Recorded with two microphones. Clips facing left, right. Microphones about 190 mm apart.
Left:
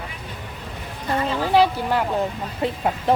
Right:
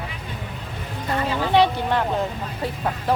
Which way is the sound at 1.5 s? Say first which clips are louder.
Even; 5° left (ahead or behind).